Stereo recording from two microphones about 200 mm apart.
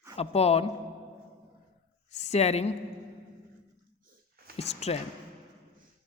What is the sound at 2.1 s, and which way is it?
Speech, 35° left (ahead or behind).